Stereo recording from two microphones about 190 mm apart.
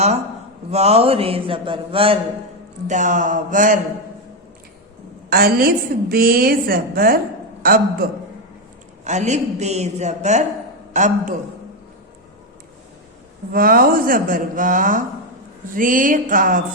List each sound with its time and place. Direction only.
0.7 s a man's voice: 35° right (ahead or behind)
2.8 s a woman's voice: 40° right (ahead or behind)
5.3 s a woman's voice: 50° right (ahead or behind)
9.0 s a man's voice: 40° right (ahead or behind)
13.5 s a woman's voice: 50° right (ahead or behind)